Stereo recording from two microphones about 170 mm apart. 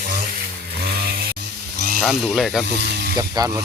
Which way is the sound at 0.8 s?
65° right (ahead or behind).